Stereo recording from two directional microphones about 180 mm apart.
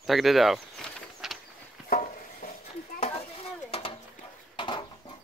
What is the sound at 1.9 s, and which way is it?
Stir, 50° left (ahead or behind).